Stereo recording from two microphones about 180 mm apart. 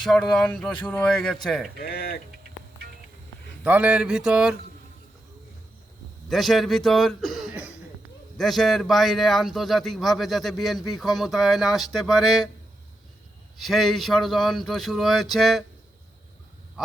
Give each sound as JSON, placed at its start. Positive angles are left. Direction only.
{"t": 0.0, "sound": "a man's voice", "side_deg": 0}
{"t": 1.8, "sound": "speech", "side_deg": 55}
{"t": 3.6, "sound": "speech", "side_deg": -5}
{"t": 6.2, "sound": "a man's voice", "side_deg": 0}
{"t": 13.6, "sound": "a man's voice", "side_deg": 0}